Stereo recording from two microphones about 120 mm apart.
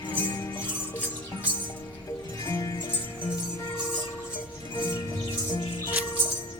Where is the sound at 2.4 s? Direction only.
20° left (ahead or behind).